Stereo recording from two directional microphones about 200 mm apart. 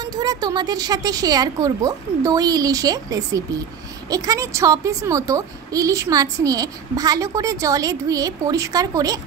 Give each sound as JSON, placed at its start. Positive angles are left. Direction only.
{"t": 0.0, "sound": "a child's voice", "side_deg": -20}